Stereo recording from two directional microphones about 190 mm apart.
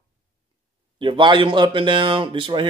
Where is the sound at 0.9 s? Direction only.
25° right (ahead or behind).